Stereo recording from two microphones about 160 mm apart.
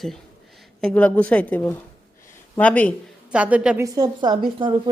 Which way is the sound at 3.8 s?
25° right (ahead or behind).